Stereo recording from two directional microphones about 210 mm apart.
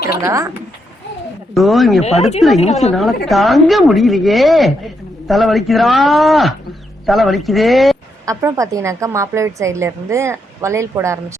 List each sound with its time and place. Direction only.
0.2 s a woman's voice: 15° right (ahead or behind)
1.5 s a woman's voice: centre (ahead or behind)
2.0 s a woman's voice: 30° left (ahead or behind)
3.2 s a woman's voice: centre (ahead or behind)
8.3 s a woman's voice: 15° right (ahead or behind)